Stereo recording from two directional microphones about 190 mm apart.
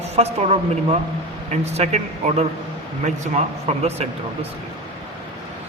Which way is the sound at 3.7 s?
35° right (ahead or behind).